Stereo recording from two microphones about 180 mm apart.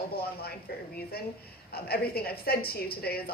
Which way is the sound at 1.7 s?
60° left (ahead or behind).